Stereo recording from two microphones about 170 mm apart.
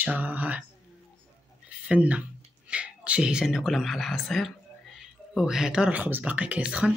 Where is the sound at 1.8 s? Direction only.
10° right (ahead or behind).